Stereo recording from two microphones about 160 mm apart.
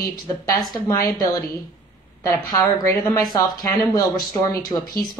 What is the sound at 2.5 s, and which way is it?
A woman's voice, 20° left (ahead or behind).